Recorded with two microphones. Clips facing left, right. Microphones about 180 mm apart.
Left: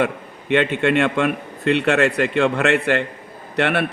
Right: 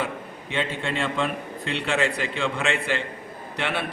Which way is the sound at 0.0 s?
70° left (ahead or behind).